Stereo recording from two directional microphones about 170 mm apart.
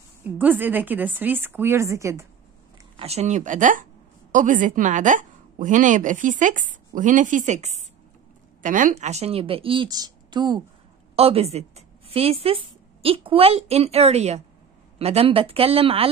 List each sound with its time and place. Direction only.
0.4 s a woman's voice: 10° right (ahead or behind)
3.0 s a woman's voice: 40° right (ahead or behind)
11.1 s speech: 35° right (ahead or behind)